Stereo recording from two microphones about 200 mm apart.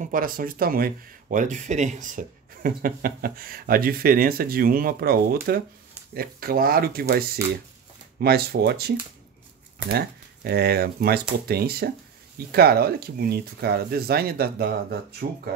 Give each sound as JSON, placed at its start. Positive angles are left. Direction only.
{"t": 0.0, "sound": "speech", "side_deg": -45}